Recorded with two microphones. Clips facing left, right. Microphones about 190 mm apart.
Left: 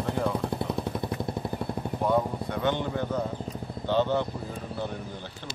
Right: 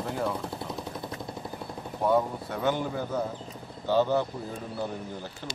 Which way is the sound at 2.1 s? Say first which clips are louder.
Right 1 dB; 5° right (ahead or behind).